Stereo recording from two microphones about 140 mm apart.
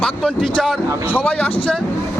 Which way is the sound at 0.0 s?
5° left (ahead or behind).